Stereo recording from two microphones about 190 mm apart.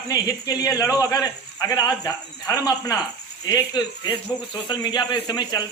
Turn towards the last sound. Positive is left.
turn(degrees=20)  # may be behind; listen again after turning